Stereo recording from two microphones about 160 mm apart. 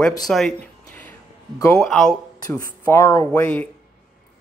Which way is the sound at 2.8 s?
15° left (ahead or behind).